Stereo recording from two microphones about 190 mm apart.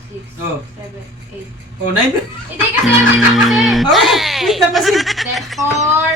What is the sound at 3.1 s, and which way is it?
Speech, centre (ahead or behind).